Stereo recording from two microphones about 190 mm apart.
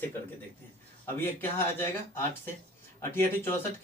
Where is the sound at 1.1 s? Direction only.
10° left (ahead or behind).